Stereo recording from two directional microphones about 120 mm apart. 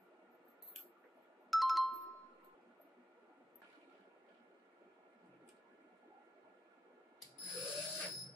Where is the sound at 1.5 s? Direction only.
Centre (ahead or behind).